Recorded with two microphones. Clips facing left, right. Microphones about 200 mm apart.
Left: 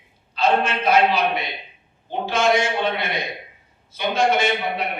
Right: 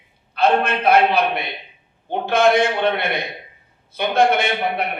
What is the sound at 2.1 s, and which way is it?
A man's voice, 60° right (ahead or behind).